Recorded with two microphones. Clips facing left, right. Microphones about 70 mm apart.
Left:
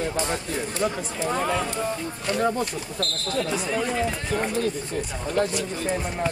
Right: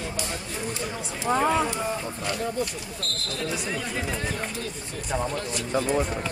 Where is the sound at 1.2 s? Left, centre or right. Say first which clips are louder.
Right 3 dB; centre.